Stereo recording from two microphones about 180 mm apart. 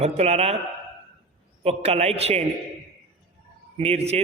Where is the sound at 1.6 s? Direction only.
35° right (ahead or behind).